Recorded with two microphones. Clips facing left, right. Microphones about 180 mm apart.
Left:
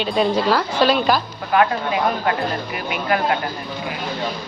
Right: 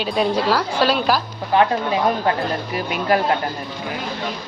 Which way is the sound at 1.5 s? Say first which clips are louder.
Right 1 dB; 30° right (ahead or behind).